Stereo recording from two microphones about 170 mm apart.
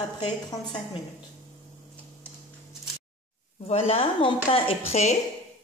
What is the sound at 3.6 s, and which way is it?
Speech, 35° left (ahead or behind).